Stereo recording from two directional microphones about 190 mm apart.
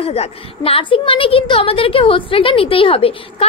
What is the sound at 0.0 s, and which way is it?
A woman's voice, 30° left (ahead or behind).